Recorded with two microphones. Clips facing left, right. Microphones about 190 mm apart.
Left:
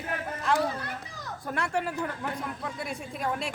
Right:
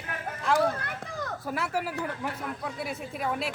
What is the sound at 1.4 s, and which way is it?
Speech, 5° right (ahead or behind).